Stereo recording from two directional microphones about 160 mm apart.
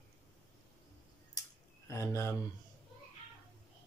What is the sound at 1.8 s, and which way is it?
Speech, 20° left (ahead or behind).